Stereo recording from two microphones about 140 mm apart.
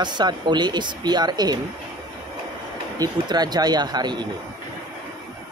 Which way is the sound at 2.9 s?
30° right (ahead or behind).